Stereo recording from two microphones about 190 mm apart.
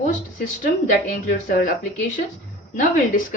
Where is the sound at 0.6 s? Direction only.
50° left (ahead or behind).